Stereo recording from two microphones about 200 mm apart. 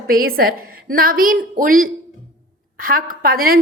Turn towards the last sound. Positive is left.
turn(degrees=-45)  # may be behind; listen again after turning